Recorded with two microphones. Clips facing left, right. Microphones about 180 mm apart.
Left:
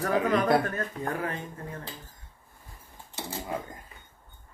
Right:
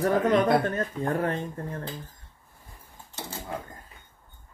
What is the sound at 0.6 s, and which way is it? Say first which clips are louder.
Speech: right 4 dB; 30° right (ahead or behind).